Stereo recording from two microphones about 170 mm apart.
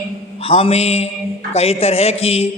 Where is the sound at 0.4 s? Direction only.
35° left (ahead or behind).